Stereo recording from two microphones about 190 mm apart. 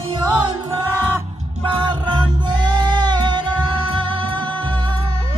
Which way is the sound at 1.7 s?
25° right (ahead or behind).